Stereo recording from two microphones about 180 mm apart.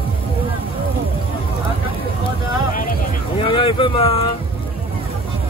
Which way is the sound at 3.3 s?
30° left (ahead or behind).